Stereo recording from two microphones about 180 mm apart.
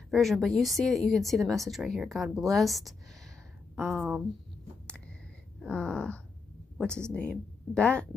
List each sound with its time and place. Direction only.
0.1 s speech: centre (ahead or behind)
5.6 s a sound: 5° left (ahead or behind)
6.8 s speech: 5° left (ahead or behind)